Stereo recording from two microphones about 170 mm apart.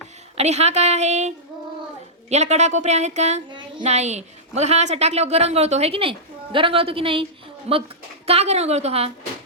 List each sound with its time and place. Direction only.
0.3 s a woman's voice: 40° right (ahead or behind)
2.3 s a woman's voice: 40° right (ahead or behind)